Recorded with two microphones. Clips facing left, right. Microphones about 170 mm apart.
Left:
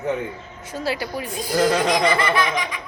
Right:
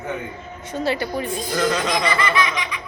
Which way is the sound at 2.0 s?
50° left (ahead or behind).